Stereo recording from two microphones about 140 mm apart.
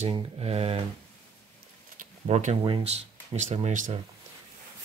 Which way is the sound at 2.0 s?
55° right (ahead or behind).